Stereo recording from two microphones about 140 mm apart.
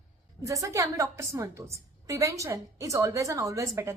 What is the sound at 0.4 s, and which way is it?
A woman's voice, 25° right (ahead or behind).